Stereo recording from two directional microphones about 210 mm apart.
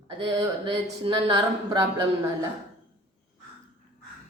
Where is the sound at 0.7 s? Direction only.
25° right (ahead or behind).